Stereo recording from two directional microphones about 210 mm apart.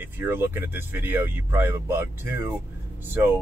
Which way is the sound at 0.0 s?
10° right (ahead or behind).